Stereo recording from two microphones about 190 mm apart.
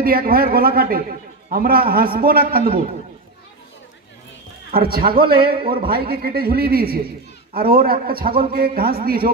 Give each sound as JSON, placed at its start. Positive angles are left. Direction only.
{"t": 0.0, "sound": "a man's voice", "side_deg": -50}
{"t": 4.7, "sound": "a man's voice", "side_deg": -50}